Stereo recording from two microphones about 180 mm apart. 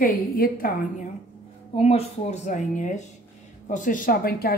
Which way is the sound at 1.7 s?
35° left (ahead or behind).